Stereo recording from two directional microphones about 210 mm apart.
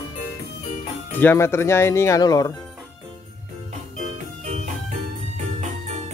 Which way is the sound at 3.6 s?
35° right (ahead or behind).